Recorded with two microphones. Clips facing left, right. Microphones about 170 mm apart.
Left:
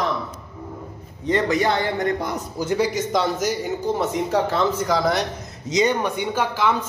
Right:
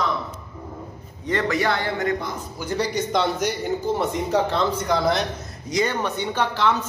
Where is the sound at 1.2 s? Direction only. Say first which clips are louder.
Left 3 dB; 20° left (ahead or behind).